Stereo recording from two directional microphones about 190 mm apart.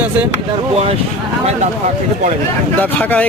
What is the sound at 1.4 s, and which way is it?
Speech, 40° right (ahead or behind).